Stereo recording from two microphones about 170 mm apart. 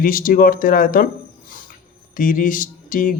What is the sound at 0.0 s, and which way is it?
Speech, 55° left (ahead or behind).